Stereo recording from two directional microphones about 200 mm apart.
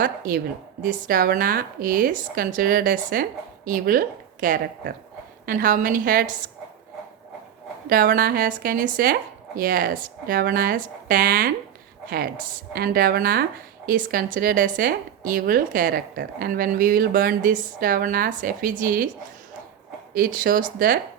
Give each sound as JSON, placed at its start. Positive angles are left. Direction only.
{"t": 0.0, "sound": "speech", "side_deg": -45}
{"t": 7.9, "sound": "speech", "side_deg": -45}
{"t": 20.1, "sound": "speech", "side_deg": -45}